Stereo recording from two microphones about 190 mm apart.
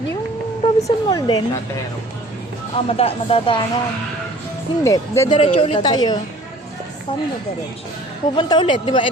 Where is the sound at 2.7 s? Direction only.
30° left (ahead or behind).